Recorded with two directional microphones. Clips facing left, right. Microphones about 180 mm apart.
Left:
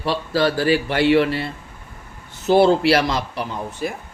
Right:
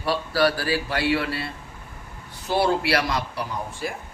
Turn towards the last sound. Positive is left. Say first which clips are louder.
# left 4 dB
turn(degrees=25)  # may be behind; listen again after turning